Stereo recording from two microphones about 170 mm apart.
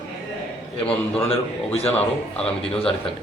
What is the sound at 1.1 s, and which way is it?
Speech, 35° left (ahead or behind).